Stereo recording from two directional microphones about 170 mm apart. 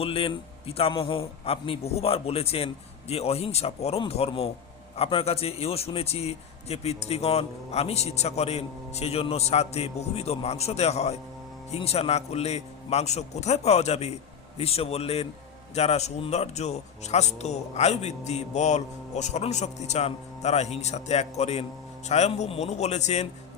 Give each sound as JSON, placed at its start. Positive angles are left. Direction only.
{"t": 0.0, "sound": "speech", "side_deg": 35}